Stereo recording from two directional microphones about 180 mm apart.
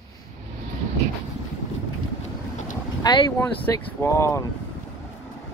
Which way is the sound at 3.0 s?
20° left (ahead or behind).